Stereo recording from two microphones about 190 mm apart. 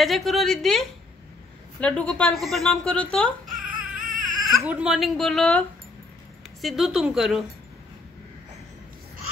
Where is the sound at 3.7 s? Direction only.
45° right (ahead or behind).